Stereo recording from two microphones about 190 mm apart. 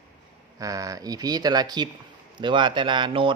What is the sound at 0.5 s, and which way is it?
A man's voice, 20° right (ahead or behind).